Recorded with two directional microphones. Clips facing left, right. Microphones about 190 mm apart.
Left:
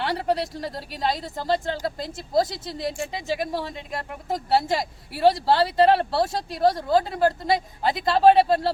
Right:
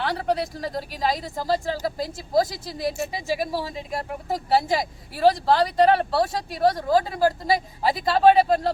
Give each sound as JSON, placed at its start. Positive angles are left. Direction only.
{"t": 0.0, "sound": "speech", "side_deg": 0}